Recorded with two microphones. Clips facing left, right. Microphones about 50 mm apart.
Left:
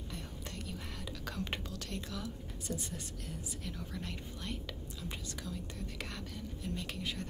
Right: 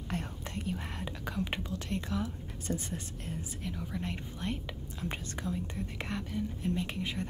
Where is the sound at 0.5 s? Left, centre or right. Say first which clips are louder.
Right 7 dB; right.